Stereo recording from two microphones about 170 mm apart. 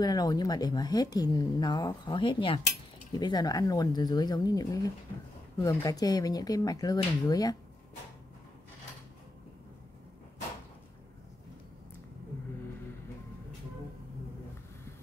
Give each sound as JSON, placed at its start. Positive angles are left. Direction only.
{"t": 0.0, "sound": "a woman's voice", "side_deg": 25}